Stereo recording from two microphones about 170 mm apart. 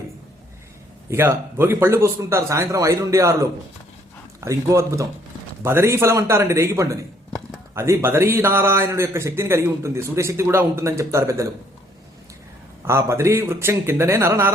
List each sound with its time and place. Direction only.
1.1 s a man's voice: 15° right (ahead or behind)
4.4 s a man's voice: 20° right (ahead or behind)
12.8 s a man's voice: 15° right (ahead or behind)